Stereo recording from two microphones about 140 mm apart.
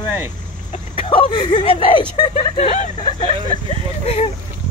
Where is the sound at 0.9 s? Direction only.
40° left (ahead or behind).